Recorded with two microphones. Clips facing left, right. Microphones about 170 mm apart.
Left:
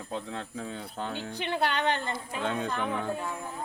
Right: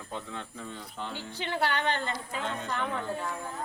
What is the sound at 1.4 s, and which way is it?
Speech, 20° left (ahead or behind).